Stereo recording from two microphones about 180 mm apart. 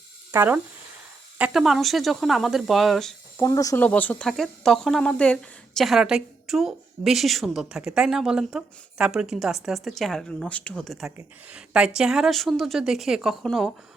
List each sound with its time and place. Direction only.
0.3 s speech: 10° right (ahead or behind)
3.4 s speech: 20° left (ahead or behind)
3.8 s speech: 5° left (ahead or behind)